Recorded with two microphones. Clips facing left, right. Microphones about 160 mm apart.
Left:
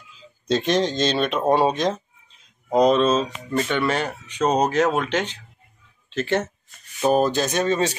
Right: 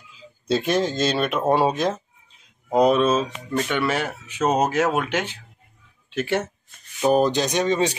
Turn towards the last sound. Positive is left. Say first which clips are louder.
# even
turn(degrees=-15)  # may be behind; listen again after turning